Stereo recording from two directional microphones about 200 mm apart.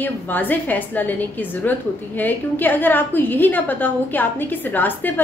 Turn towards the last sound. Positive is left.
turn(degrees=10)  # may be behind; listen again after turning